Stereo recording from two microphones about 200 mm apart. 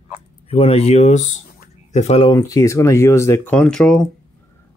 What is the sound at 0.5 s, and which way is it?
Speech, 30° left (ahead or behind).